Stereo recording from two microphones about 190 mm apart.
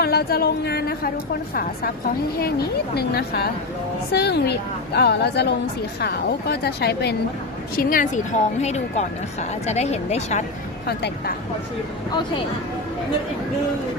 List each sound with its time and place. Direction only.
0.0 s a woman's voice: 55° left (ahead or behind)
2.9 s a woman's voice: 55° left (ahead or behind)
7.8 s speech: 45° left (ahead or behind)